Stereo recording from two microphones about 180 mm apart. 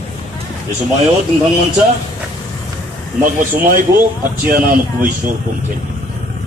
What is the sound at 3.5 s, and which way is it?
Speech, 50° right (ahead or behind).